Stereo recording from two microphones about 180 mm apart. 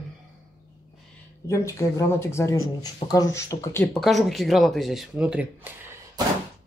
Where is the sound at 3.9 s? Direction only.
Centre (ahead or behind).